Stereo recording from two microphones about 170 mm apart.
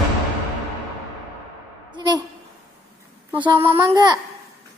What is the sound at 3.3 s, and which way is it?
Speech, 20° right (ahead or behind).